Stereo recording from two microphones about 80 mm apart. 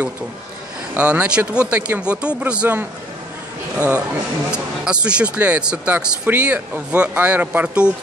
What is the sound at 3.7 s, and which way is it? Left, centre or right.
Speech, centre.